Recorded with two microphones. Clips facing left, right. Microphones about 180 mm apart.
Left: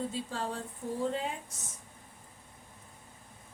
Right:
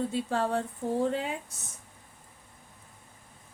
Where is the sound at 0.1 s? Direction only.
65° right (ahead or behind).